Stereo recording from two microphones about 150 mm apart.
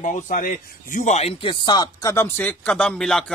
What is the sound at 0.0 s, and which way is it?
A man's voice, 60° left (ahead or behind).